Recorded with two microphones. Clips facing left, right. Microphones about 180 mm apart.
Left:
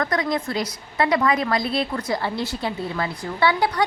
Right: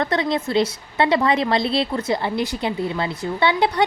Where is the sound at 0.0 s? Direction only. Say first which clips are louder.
Right 2 dB; 25° right (ahead or behind).